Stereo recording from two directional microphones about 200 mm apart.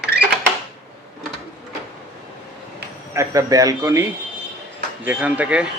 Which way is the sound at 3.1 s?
15° right (ahead or behind).